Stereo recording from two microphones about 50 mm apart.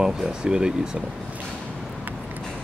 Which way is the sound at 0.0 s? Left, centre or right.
Centre.